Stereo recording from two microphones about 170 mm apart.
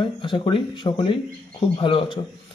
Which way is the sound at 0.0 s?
30° left (ahead or behind).